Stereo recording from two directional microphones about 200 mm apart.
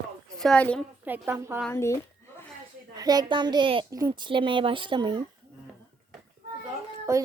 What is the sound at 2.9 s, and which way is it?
A woman's voice, 20° right (ahead or behind).